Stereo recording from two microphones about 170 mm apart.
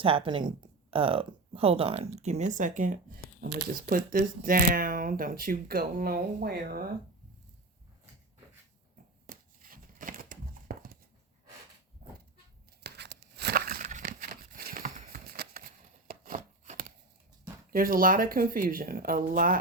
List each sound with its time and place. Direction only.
0.0 s speech: 30° right (ahead or behind); by 6.8 s 60° right (ahead or behind)
9.2 s crumpling: 50° right (ahead or behind)
12.8 s a sound: 85° right; by 15.6 s 60° right (ahead or behind)
16.0 s chopping: 55° right (ahead or behind)
17.7 s speech: 55° right (ahead or behind)